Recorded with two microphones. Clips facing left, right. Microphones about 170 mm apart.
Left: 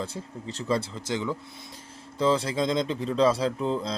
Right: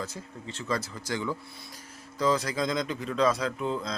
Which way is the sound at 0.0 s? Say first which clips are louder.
Left 3 dB; 35° left (ahead or behind).